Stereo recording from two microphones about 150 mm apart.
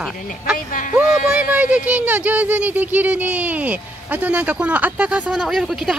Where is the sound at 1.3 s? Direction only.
10° right (ahead or behind).